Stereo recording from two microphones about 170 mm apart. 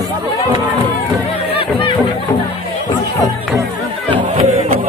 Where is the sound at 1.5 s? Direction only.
30° left (ahead or behind).